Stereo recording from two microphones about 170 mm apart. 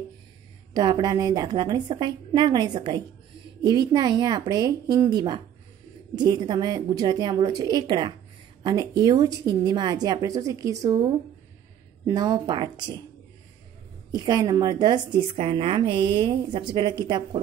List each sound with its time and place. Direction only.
0.7 s a woman's voice: 25° right (ahead or behind)
14.1 s a woman's voice: 25° right (ahead or behind)